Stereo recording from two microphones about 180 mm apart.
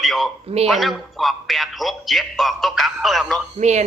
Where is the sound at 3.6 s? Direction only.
40° right (ahead or behind).